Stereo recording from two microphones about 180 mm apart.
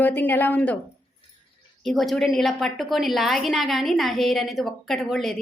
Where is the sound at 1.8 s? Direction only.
Centre (ahead or behind).